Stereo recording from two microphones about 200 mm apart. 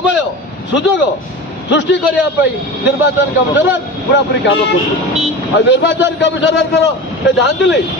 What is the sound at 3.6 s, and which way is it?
Speech, 65° left (ahead or behind).